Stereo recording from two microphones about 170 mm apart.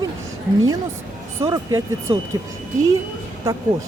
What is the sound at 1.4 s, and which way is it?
Speech, 20° right (ahead or behind).